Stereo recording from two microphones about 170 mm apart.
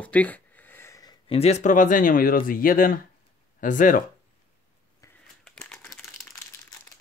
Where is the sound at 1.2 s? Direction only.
40° left (ahead or behind).